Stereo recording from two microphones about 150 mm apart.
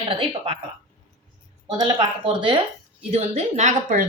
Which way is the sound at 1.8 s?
30° right (ahead or behind).